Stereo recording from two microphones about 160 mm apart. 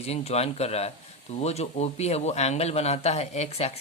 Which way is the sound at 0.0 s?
40° left (ahead or behind).